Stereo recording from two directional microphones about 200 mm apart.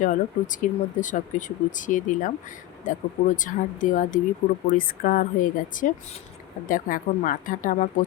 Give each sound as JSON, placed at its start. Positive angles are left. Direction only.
{"t": 0.0, "sound": "speech", "side_deg": 40}